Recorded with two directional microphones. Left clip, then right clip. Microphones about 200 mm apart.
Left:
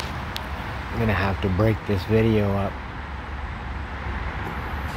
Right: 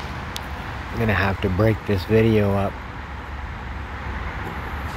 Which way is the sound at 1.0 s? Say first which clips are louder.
Right 3 dB; 5° right (ahead or behind).